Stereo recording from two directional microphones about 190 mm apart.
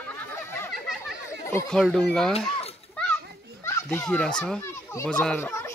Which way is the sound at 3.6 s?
15° left (ahead or behind).